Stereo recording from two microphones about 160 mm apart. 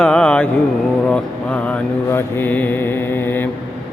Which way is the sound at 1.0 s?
5° left (ahead or behind).